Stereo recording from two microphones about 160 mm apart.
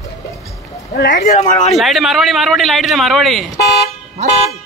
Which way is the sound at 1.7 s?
Centre (ahead or behind).